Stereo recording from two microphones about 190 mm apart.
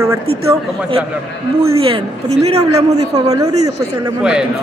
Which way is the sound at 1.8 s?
30° right (ahead or behind).